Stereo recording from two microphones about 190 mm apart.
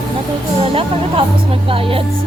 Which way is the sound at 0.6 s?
30° right (ahead or behind).